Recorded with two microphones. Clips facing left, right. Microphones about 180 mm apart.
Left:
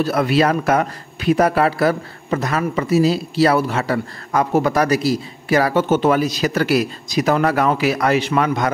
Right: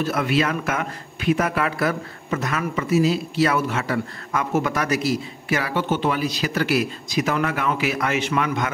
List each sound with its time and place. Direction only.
0.0 s a man's voice: 35° left (ahead or behind)